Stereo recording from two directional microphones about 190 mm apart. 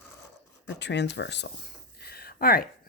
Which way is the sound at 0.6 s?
65° left (ahead or behind).